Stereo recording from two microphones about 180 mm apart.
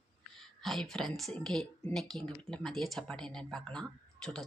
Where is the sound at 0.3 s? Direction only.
Centre (ahead or behind).